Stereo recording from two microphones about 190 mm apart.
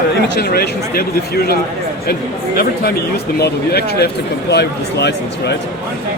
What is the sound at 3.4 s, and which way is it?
Speech, 60° left (ahead or behind).